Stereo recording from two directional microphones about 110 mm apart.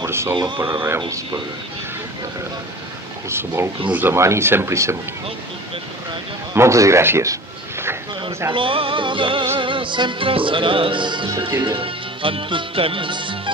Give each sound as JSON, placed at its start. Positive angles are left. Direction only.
{"t": 0.0, "sound": "speech", "side_deg": -25}
{"t": 0.4, "sound": "music", "side_deg": -45}
{"t": 0.7, "sound": "speech", "side_deg": -20}
{"t": 3.3, "sound": "speech", "side_deg": -20}
{"t": 6.5, "sound": "speech", "side_deg": -25}
{"t": 8.5, "sound": "music", "side_deg": -50}